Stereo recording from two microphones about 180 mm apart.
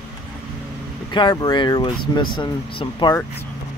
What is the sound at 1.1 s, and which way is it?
Speech, 25° left (ahead or behind).